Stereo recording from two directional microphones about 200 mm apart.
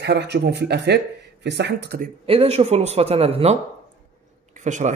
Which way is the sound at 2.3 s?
30° right (ahead or behind).